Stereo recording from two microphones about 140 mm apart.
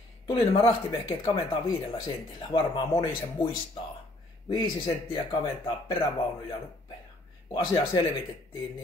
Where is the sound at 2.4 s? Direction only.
30° left (ahead or behind).